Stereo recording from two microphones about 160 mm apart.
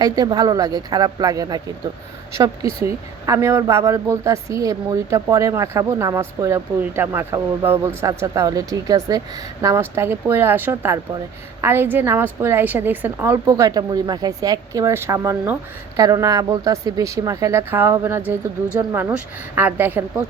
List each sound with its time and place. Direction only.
0.0 s speech: 25° right (ahead or behind)